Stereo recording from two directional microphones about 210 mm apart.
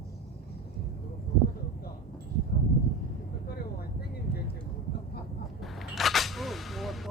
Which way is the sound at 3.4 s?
50° left (ahead or behind).